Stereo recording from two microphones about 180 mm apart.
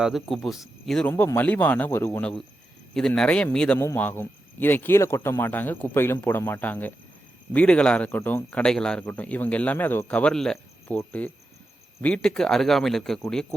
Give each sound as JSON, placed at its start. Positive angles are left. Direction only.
{"t": 0.0, "sound": "speech", "side_deg": 0}
{"t": 1.1, "sound": "speech", "side_deg": 15}